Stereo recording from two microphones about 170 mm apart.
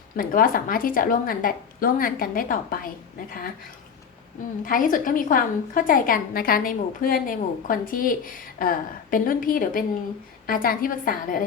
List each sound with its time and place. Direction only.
0.2 s a woman's voice: 55° left (ahead or behind)
4.6 s a woman's voice: 55° left (ahead or behind)